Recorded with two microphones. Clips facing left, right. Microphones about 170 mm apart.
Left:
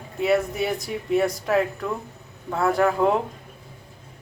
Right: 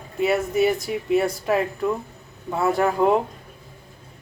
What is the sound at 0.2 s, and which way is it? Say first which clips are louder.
Speech: right 2 dB; centre (ahead or behind).